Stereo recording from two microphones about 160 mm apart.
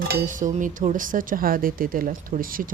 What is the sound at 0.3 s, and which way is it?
Speech, 55° right (ahead or behind).